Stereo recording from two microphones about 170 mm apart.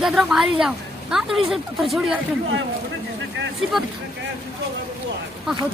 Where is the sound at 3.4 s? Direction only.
90° right.